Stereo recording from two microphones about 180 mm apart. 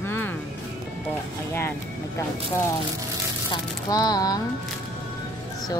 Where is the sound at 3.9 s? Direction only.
20° left (ahead or behind).